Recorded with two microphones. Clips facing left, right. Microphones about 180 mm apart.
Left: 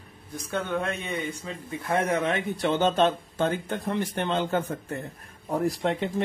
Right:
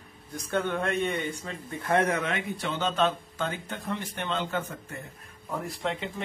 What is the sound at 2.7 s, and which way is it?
Speech, 45° left (ahead or behind).